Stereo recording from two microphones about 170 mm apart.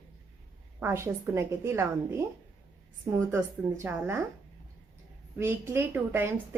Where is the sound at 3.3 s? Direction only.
15° right (ahead or behind).